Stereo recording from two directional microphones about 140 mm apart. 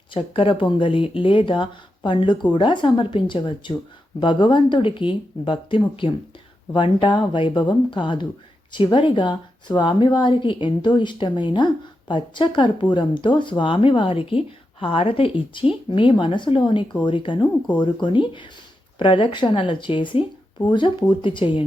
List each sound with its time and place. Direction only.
0.1 s speech: 40° left (ahead or behind)